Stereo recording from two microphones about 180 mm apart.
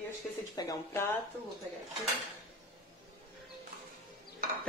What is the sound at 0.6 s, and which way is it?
Speech, 15° left (ahead or behind).